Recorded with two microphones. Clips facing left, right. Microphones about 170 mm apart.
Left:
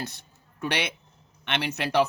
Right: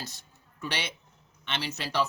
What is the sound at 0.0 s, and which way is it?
A man's voice, 60° left (ahead or behind).